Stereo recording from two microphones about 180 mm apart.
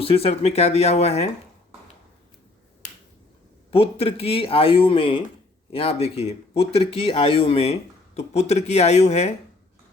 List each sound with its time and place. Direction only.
0.0 s speech: 35° left (ahead or behind)
3.7 s speech: 35° left (ahead or behind)